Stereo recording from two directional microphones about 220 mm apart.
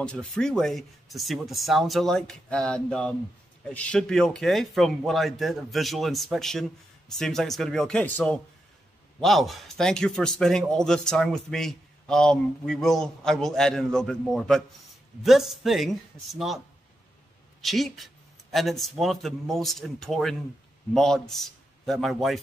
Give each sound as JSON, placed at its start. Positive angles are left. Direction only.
{"t": 0.0, "sound": "a man's voice", "side_deg": 5}